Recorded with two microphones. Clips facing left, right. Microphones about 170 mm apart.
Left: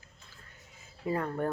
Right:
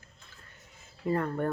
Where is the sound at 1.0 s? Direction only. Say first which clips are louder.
Right 2 dB; 5° left (ahead or behind).